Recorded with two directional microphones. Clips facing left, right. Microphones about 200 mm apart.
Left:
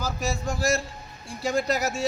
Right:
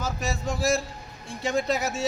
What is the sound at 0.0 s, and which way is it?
A man's voice, centre (ahead or behind).